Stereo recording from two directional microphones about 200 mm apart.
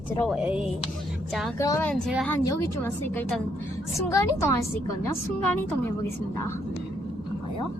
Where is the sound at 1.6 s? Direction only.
15° left (ahead or behind).